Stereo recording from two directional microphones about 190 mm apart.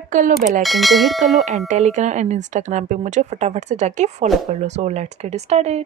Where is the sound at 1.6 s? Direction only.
40° right (ahead or behind).